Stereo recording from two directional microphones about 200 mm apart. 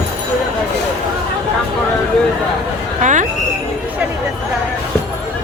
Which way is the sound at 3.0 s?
40° right (ahead or behind).